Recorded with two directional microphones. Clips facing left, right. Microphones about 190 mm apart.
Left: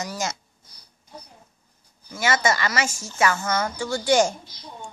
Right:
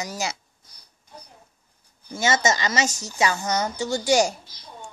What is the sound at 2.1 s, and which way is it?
A woman's voice, 25° right (ahead or behind).